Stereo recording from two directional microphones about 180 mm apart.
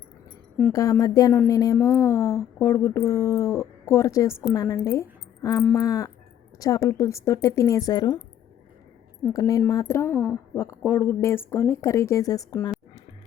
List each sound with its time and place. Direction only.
0.7 s a woman's voice: 20° left (ahead or behind)
9.3 s a woman's voice: 20° left (ahead or behind)